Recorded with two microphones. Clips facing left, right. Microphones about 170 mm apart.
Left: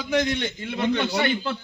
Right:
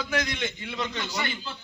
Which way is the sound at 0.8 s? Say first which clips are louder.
Left 9 dB; 60° left (ahead or behind).